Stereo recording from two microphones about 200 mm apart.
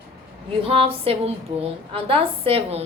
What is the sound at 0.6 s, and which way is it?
A woman's voice, 25° right (ahead or behind).